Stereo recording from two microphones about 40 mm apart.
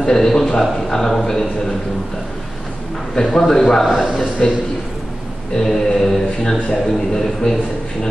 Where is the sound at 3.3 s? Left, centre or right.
Centre.